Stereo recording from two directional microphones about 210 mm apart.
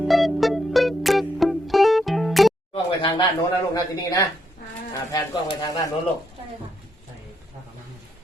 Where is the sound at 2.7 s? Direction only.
20° left (ahead or behind).